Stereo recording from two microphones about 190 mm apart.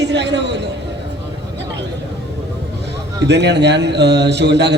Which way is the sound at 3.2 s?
65° right (ahead or behind).